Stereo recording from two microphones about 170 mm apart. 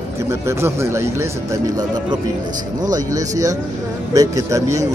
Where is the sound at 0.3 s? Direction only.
15° right (ahead or behind).